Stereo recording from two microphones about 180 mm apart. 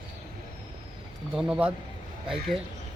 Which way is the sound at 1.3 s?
5° right (ahead or behind).